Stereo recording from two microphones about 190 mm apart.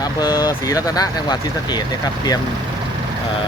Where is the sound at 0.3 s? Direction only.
20° left (ahead or behind).